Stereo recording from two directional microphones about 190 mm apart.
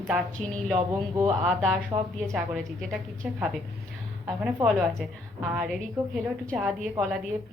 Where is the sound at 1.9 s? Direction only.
25° right (ahead or behind).